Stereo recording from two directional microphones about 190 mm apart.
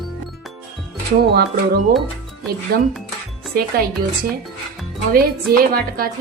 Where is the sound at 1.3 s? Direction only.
55° right (ahead or behind).